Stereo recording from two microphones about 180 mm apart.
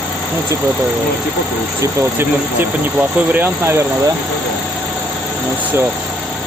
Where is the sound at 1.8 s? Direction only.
15° right (ahead or behind).